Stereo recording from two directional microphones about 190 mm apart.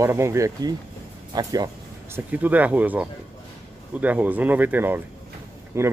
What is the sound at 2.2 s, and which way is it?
Speech, 10° right (ahead or behind).